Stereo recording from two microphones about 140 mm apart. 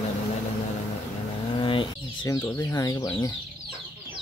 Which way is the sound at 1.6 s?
35° left (ahead or behind).